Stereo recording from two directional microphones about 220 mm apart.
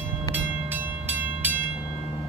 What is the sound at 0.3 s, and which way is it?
Train, 10° right (ahead or behind).